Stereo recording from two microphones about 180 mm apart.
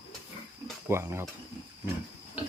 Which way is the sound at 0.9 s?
15° right (ahead or behind).